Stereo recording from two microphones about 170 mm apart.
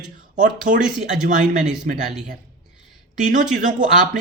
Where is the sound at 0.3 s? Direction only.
50° right (ahead or behind).